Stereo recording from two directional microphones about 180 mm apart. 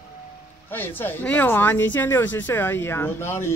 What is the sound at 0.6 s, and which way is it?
Speech, 10° left (ahead or behind).